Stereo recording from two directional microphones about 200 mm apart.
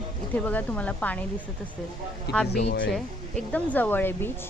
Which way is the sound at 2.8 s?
5° left (ahead or behind).